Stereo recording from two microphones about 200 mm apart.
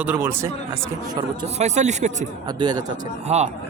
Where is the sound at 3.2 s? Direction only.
35° right (ahead or behind).